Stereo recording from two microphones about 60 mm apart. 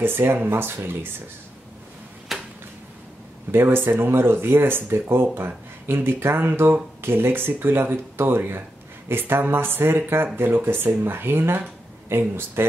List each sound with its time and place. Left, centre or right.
0.0 s speech: right
2.3 s a sound: centre
3.5 s speech: right